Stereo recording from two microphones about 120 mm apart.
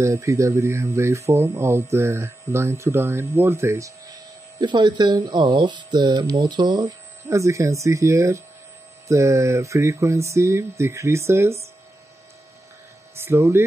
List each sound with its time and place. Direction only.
0.0 s speech: 25° right (ahead or behind)
4.6 s speech: 40° right (ahead or behind); by 11.5 s 20° right (ahead or behind)
13.1 s speech: 20° right (ahead or behind)